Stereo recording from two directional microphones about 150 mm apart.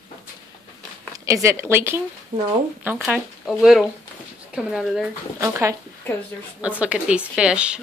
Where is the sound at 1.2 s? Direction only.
20° right (ahead or behind).